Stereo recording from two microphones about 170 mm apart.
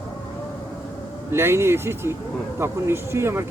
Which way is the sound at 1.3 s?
15° right (ahead or behind).